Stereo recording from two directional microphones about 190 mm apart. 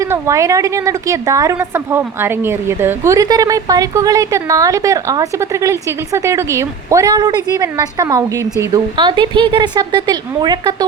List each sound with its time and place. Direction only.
0.0 s a woman's voice: 15° right (ahead or behind)